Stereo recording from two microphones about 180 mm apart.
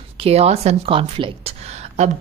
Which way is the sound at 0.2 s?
35° right (ahead or behind).